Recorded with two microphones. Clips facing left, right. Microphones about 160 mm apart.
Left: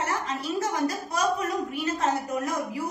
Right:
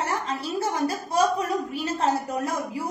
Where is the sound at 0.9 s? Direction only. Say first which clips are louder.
Right 4 dB; 30° right (ahead or behind).